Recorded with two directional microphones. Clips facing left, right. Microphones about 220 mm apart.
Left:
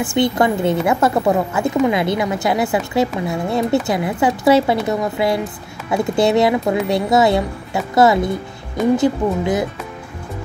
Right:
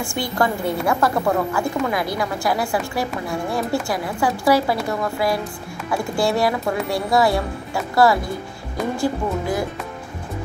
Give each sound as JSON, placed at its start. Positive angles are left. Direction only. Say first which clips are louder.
{"t": 0.0, "sound": "a woman's voice", "louder": "left 6 dB", "side_deg": 20}